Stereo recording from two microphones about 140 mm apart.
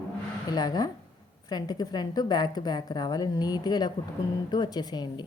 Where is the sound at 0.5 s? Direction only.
30° left (ahead or behind).